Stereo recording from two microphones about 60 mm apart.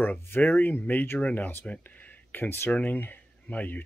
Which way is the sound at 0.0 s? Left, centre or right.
Left.